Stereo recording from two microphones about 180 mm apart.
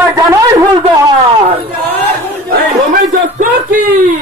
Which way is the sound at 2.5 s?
50° right (ahead or behind).